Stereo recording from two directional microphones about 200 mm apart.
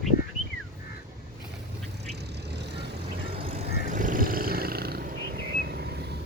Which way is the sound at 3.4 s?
30° right (ahead or behind).